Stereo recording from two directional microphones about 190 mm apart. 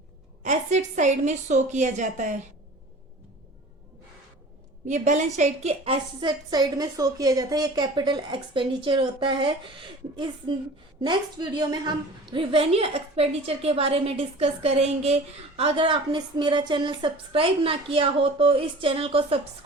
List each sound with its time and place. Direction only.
0.4 s a woman's voice: 40° right (ahead or behind)
4.9 s a woman's voice: 40° right (ahead or behind)